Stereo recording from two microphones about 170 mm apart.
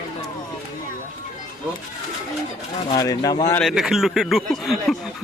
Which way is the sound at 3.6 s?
Centre (ahead or behind).